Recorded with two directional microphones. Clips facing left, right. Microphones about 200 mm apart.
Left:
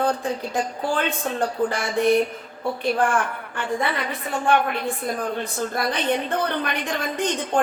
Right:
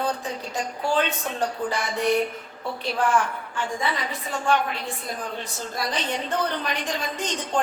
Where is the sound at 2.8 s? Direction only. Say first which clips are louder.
Left 1 dB; 55° left (ahead or behind).